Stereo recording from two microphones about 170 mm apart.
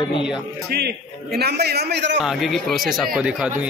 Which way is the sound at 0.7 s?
70° right (ahead or behind).